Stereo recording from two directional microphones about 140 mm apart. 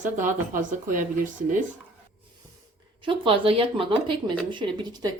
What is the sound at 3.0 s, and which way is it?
Speech, 40° right (ahead or behind).